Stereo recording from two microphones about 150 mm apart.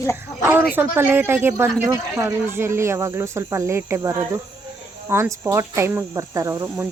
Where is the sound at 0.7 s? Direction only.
15° right (ahead or behind).